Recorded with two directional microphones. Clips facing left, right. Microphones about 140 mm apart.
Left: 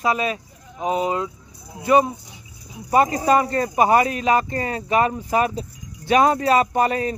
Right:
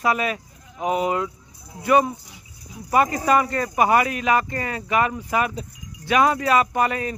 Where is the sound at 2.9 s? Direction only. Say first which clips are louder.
Left 2 dB; 30° left (ahead or behind).